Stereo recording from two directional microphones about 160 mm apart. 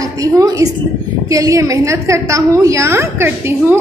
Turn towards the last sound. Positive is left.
turn(degrees=-15)  # may be behind; listen again after turning